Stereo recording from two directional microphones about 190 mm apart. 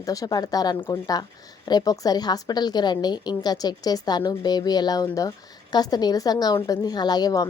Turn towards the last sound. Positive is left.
turn(degrees=20)  # may be behind; listen again after turning